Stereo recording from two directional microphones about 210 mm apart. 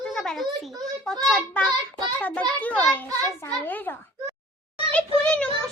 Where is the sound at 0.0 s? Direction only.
5° left (ahead or behind).